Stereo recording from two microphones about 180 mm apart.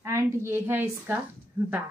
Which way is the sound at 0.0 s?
15° right (ahead or behind).